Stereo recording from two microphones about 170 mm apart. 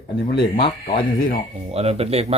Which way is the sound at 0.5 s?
30° left (ahead or behind).